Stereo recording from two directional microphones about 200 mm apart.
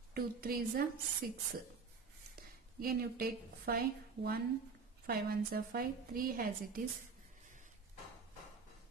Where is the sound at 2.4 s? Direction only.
50° right (ahead or behind).